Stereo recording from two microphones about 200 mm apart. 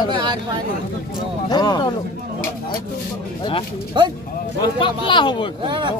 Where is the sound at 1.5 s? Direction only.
20° left (ahead or behind).